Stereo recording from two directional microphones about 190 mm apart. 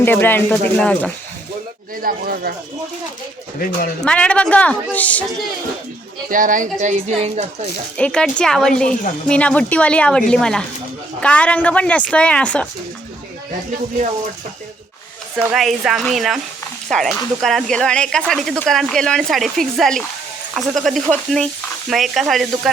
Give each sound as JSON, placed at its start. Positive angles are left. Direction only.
{"t": 0.0, "sound": "a woman's voice", "side_deg": 10}
{"t": 2.0, "sound": "speech", "side_deg": -50}
{"t": 4.0, "sound": "speech", "side_deg": 5}
{"t": 6.3, "sound": "speech", "side_deg": -45}
{"t": 7.9, "sound": "a woman's voice", "side_deg": 5}
{"t": 15.4, "sound": "speech", "side_deg": -5}